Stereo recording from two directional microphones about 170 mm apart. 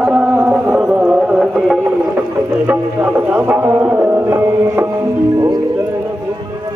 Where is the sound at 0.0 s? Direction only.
10° right (ahead or behind).